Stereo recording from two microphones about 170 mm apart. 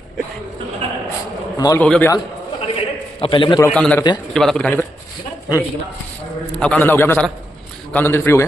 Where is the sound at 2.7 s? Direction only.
30° left (ahead or behind).